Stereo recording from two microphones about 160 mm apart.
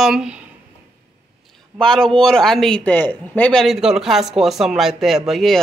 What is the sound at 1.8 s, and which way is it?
Speech, 5° left (ahead or behind).